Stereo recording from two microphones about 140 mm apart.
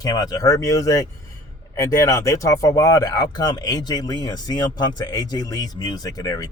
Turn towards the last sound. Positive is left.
turn(degrees=25)  # may be behind; listen again after turning